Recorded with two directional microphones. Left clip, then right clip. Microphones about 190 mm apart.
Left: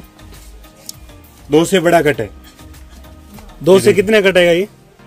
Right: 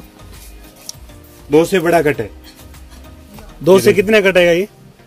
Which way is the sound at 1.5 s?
20° left (ahead or behind).